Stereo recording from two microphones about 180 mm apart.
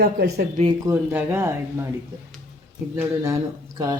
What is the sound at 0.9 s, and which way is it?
Speech, 10° right (ahead or behind).